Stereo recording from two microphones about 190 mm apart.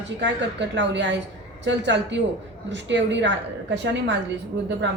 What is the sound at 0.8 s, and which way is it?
Speech, 70° right (ahead or behind).